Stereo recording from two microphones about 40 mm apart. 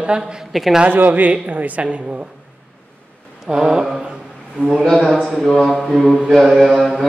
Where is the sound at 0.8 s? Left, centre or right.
Right.